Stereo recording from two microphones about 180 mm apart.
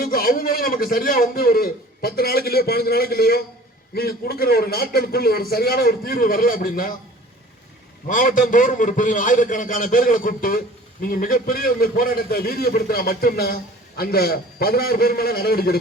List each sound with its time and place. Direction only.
0.0 s a man's voice: 55° left (ahead or behind)
8.0 s a man's voice: 50° left (ahead or behind)